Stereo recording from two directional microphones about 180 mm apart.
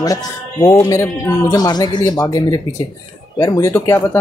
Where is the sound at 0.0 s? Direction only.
20° left (ahead or behind).